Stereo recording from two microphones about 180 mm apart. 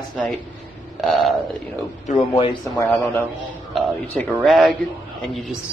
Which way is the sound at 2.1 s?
35° left (ahead or behind).